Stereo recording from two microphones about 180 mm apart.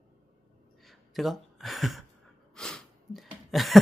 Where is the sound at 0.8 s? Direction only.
Centre (ahead or behind).